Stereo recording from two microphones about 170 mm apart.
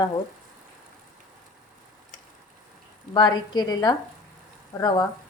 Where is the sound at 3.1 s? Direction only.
25° left (ahead or behind).